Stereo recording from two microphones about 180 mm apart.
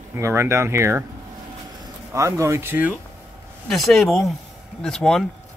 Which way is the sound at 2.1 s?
15° right (ahead or behind).